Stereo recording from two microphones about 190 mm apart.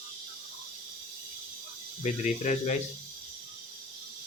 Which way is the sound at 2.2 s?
40° left (ahead or behind).